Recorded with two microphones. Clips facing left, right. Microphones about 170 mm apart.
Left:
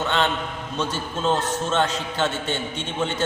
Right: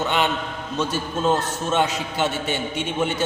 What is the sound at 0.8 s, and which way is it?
A man's voice, 10° right (ahead or behind).